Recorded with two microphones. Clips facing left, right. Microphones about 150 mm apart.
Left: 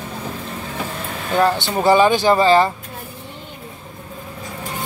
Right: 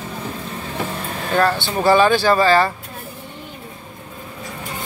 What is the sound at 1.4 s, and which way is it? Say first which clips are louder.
Speech: left 1 dB; 20° left (ahead or behind).